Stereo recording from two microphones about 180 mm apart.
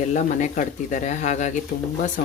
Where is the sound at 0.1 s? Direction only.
40° left (ahead or behind).